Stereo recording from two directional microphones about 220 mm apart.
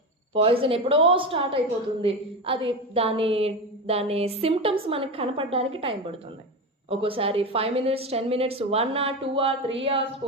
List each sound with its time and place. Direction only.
0.3 s a woman's voice: 25° right (ahead or behind)